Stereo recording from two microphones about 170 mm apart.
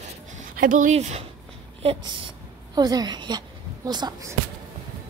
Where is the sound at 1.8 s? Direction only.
30° right (ahead or behind).